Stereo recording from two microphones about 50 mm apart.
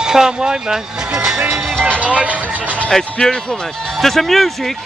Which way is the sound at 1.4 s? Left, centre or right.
Right.